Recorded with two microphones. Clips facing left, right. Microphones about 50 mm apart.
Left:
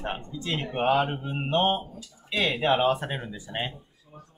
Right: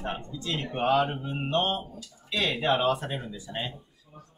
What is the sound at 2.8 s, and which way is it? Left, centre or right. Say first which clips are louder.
Speech: left 2 dB; left.